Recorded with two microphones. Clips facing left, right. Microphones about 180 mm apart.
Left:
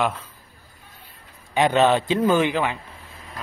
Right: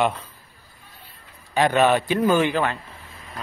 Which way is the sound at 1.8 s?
20° left (ahead or behind).